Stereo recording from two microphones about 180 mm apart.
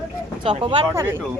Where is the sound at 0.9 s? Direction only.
15° right (ahead or behind).